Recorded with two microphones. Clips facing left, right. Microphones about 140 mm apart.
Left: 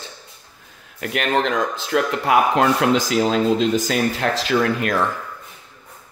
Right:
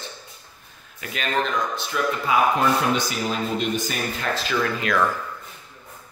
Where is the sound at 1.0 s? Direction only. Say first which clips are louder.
Left 5 dB; 65° left (ahead or behind).